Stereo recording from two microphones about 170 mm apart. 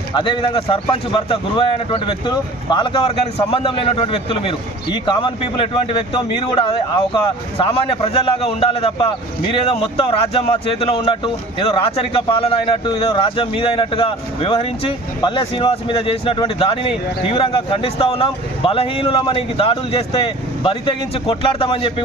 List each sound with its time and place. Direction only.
0.1 s a man's voice: 30° left (ahead or behind)